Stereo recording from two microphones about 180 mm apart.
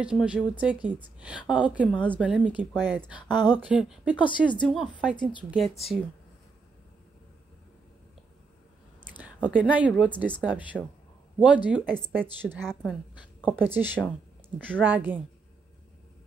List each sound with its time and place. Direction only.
0.0 s speech: 5° right (ahead or behind)
2.0 s speech: 5° left (ahead or behind)
2.2 s speech: 5° right (ahead or behind)
2.7 s speech: 5° left (ahead or behind)
3.1 s a woman's voice: 25° left (ahead or behind)
3.4 s speech: 10° right (ahead or behind)
4.2 s a woman's voice: 25° left (ahead or behind)
5.5 s speech: centre (ahead or behind)
9.2 s a woman's voice: 10° right (ahead or behind)
12.5 s a woman's voice: centre (ahead or behind)